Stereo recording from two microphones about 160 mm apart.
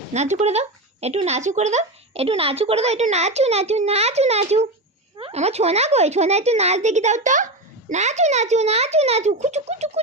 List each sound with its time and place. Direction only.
0.1 s speech: 45° right (ahead or behind)